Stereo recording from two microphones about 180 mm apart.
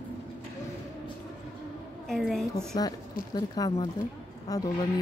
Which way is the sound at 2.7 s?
25° left (ahead or behind).